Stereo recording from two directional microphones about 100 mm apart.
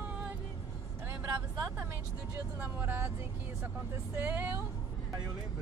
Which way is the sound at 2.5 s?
20° right (ahead or behind).